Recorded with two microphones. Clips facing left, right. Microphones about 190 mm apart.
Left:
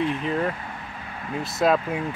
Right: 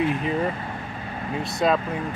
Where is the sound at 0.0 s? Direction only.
5° right (ahead or behind).